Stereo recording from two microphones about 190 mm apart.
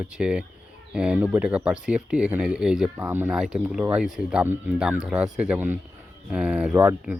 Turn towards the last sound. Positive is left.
turn(degrees=-5)  # may be behind; listen again after turning